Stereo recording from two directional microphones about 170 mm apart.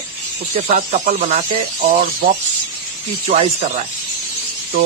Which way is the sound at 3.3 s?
40° right (ahead or behind).